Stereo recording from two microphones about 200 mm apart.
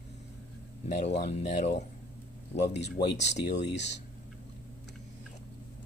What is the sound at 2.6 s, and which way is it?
Speech, 55° left (ahead or behind).